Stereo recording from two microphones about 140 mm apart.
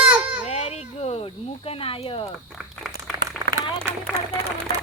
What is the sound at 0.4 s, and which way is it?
Snake, 50° left (ahead or behind).